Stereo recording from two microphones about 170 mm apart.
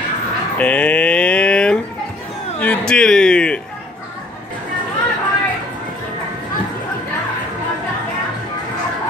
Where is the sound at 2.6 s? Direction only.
5° left (ahead or behind).